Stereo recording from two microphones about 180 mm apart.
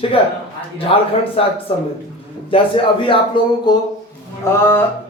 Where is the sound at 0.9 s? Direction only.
30° left (ahead or behind).